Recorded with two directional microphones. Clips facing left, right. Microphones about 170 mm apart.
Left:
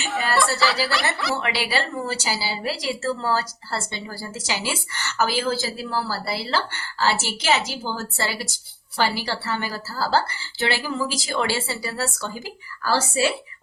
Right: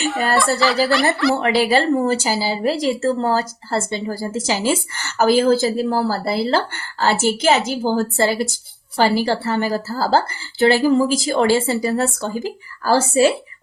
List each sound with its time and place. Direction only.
0.0 s snicker: centre (ahead or behind)
0.3 s speech: centre (ahead or behind)
1.4 s speech: 40° right (ahead or behind)
8.1 s a woman's voice: 30° right (ahead or behind)
9.0 s a woman's voice: 40° right (ahead or behind)